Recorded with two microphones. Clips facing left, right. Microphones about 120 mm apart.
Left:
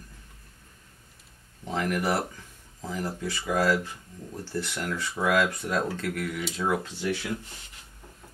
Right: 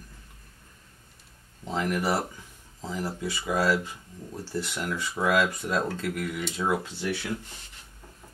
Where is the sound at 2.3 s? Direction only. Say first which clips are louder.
Even; 15° right (ahead or behind).